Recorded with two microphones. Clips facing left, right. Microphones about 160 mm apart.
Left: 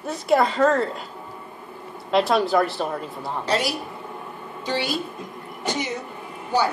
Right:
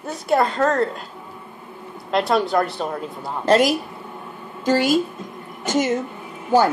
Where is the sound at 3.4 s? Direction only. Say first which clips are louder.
Right 9 dB; 50° right (ahead or behind).